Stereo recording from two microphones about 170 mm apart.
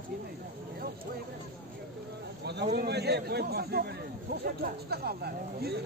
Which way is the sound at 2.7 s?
70° right (ahead or behind).